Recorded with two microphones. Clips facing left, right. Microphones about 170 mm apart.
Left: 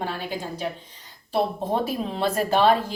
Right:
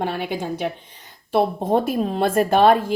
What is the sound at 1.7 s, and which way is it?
Speech, 50° right (ahead or behind).